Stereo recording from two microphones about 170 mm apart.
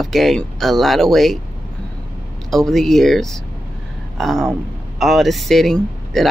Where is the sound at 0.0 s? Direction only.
Centre (ahead or behind).